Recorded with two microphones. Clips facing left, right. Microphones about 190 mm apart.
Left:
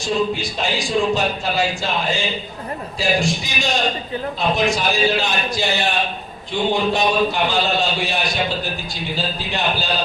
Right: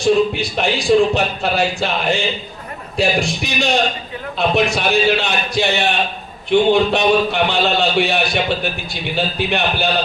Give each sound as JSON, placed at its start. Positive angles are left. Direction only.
{"t": 0.0, "sound": "a man's voice", "side_deg": -65}